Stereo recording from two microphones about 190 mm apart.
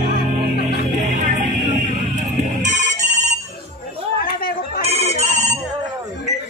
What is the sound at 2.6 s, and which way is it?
Ringtone, 40° right (ahead or behind).